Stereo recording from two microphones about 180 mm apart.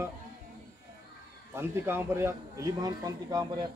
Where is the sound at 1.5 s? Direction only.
15° right (ahead or behind).